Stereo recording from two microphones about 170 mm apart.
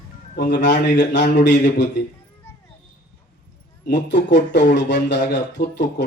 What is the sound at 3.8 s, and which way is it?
Speech, 90° left.